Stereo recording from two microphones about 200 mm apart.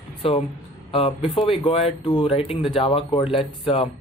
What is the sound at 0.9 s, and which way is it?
Speech, 30° left (ahead or behind).